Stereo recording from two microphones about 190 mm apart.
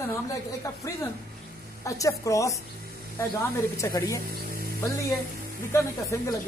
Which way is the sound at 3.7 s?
15° left (ahead or behind).